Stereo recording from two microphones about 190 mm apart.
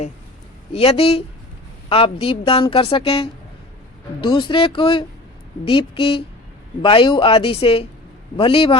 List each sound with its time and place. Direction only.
0.7 s a woman's voice: 30° left (ahead or behind)